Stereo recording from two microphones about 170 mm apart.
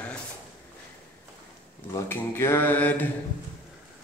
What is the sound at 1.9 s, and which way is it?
Mantra, 15° left (ahead or behind).